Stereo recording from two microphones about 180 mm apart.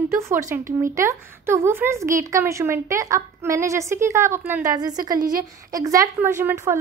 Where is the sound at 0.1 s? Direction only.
15° right (ahead or behind).